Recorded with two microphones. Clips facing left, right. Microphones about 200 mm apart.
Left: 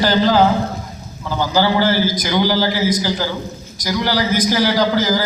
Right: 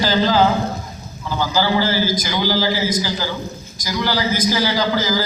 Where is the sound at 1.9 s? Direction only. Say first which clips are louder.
Left 3 dB; 60° left (ahead or behind).